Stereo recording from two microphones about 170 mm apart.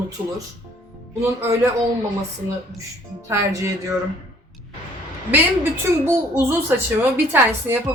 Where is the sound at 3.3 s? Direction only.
20° right (ahead or behind).